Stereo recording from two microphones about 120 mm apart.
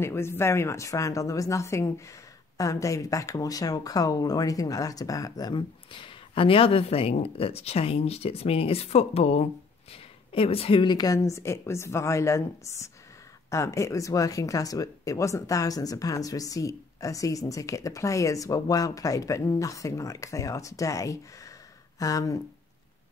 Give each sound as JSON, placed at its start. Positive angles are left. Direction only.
{"t": 0.0, "sound": "speech", "side_deg": 20}